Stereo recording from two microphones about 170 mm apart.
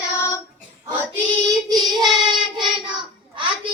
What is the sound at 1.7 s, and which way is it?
Child singing, centre (ahead or behind).